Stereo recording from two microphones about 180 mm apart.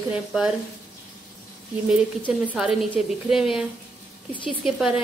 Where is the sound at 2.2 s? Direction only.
5° left (ahead or behind).